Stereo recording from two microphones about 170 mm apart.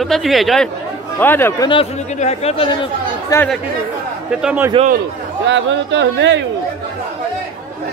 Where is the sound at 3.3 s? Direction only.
20° left (ahead or behind).